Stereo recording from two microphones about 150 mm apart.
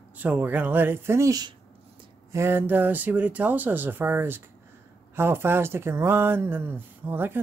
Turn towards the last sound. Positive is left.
turn(degrees=-15)  # may be behind; listen again after turning